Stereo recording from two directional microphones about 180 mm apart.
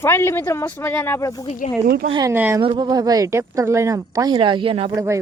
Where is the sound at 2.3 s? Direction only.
10° right (ahead or behind).